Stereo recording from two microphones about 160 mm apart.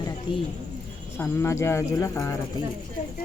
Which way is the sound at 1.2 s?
15° left (ahead or behind).